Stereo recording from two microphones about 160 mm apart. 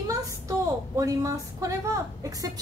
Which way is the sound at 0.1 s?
20° right (ahead or behind).